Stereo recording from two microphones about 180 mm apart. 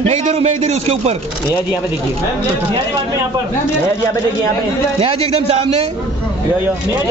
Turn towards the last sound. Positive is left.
turn(degrees=-35)  # may be behind; listen again after turning